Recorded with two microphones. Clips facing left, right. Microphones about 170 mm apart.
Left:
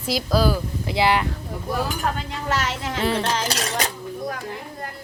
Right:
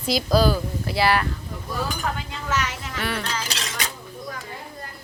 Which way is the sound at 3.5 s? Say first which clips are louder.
Left 6 dB; 45° left (ahead or behind).